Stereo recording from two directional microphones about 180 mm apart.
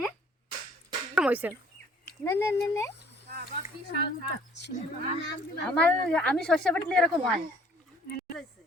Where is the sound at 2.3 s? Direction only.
15° left (ahead or behind).